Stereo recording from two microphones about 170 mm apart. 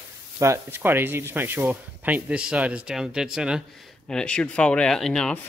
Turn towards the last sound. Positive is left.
turn(degrees=5)  # may be behind; listen again after turning